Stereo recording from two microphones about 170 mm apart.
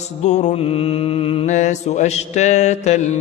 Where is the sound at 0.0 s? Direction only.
45° left (ahead or behind).